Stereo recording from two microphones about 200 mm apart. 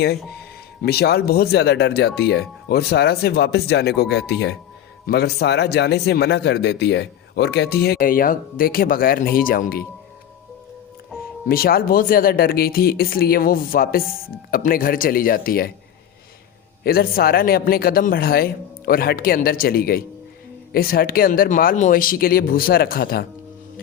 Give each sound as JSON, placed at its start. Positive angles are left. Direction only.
{"t": 0.0, "sound": "speech", "side_deg": 55}
{"t": 11.4, "sound": "speech", "side_deg": 50}
{"t": 16.8, "sound": "speech", "side_deg": 50}